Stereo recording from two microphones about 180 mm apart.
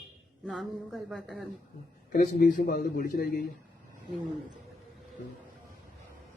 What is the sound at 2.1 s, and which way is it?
A man's voice, 50° left (ahead or behind).